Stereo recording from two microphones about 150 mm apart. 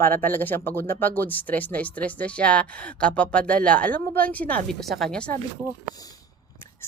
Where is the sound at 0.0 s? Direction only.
15° left (ahead or behind).